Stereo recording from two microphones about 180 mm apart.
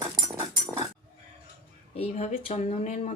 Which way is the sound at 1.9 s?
35° left (ahead or behind).